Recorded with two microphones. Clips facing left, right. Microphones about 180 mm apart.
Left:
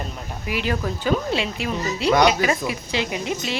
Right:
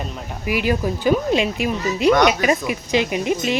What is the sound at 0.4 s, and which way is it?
Speech, 10° right (ahead or behind).